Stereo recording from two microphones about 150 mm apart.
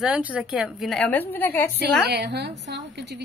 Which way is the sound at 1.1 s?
15° left (ahead or behind).